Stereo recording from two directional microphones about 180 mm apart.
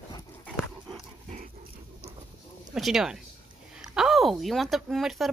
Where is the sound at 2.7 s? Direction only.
Centre (ahead or behind).